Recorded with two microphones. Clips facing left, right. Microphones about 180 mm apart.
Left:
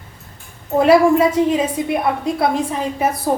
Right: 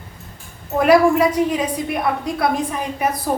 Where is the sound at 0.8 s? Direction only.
25° left (ahead or behind).